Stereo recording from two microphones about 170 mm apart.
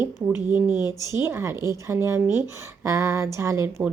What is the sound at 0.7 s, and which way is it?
Speech, 20° left (ahead or behind).